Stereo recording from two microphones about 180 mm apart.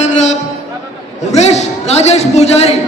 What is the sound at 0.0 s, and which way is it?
Music, 40° left (ahead or behind).